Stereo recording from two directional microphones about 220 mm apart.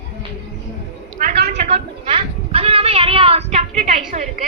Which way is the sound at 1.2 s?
40° right (ahead or behind).